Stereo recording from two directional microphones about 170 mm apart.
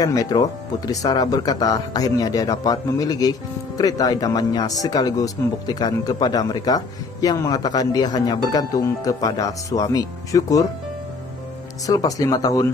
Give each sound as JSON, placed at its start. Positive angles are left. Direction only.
{"t": 0.0, "sound": "speech", "side_deg": 20}
{"t": 11.8, "sound": "speech", "side_deg": 20}